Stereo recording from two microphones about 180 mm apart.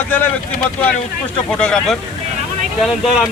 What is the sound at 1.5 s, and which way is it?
Speech, 5° left (ahead or behind).